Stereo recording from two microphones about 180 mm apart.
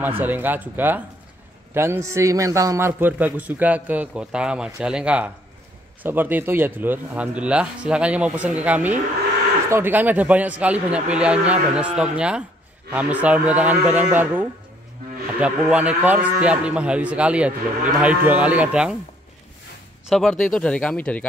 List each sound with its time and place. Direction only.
0.2 s speech: 10° right (ahead or behind)
20.1 s speech: centre (ahead or behind)